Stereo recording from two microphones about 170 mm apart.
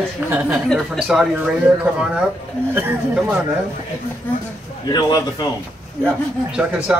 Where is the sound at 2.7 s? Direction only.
10° right (ahead or behind).